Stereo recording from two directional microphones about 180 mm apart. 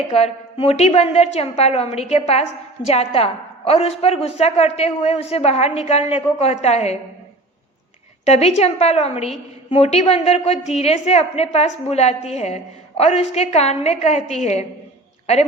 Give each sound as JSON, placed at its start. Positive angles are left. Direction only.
{"t": 0.1, "sound": "a woman's voice", "side_deg": 35}
{"t": 8.2, "sound": "a woman's voice", "side_deg": 35}